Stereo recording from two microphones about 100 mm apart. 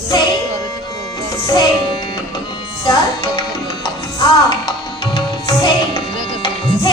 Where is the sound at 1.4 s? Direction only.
45° left (ahead or behind).